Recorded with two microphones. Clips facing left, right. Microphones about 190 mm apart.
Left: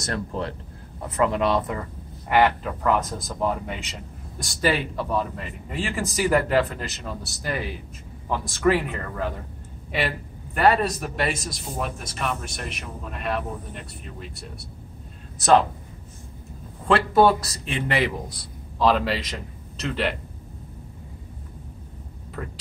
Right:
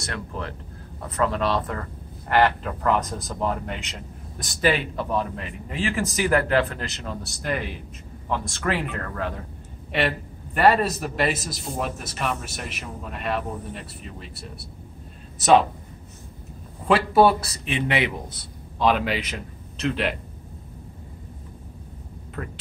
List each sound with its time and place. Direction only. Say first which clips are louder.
0.0 s speech: left 4 dB; 35° left (ahead or behind)
1.0 s a man's voice: left 2 dB; 20° left (ahead or behind); by 15.6 s 5° right (ahead or behind)
16.8 s a man's voice: even; 5° right (ahead or behind)
22.4 s a man's voice: even; centre (ahead or behind)